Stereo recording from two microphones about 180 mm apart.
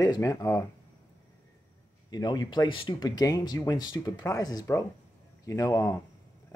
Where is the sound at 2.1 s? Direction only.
20° left (ahead or behind).